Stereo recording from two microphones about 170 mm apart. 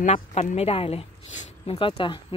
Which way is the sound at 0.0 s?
40° left (ahead or behind).